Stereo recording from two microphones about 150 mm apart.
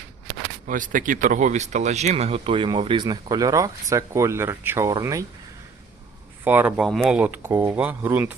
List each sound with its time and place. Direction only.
0.7 s speech: 60° right (ahead or behind); by 5.2 s 25° right (ahead or behind)
6.4 s speech: 10° right (ahead or behind)
6.8 s speech: centre (ahead or behind)